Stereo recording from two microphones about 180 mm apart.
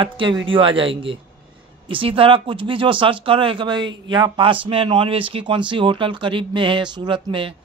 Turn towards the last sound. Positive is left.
turn(degrees=-30)  # may be behind; listen again after turning